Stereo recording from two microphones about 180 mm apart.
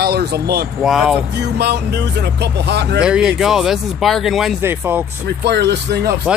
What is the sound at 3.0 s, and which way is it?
Speech, 5° right (ahead or behind).